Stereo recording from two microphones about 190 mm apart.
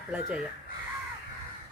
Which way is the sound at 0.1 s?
5° right (ahead or behind).